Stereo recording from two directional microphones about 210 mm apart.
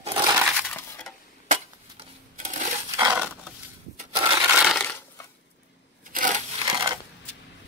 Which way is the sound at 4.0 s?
25° right (ahead or behind).